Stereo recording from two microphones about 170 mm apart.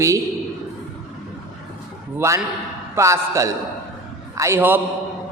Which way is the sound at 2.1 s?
15° right (ahead or behind).